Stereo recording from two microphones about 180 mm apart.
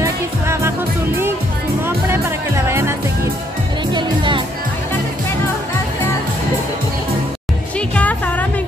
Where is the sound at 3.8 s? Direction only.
25° right (ahead or behind).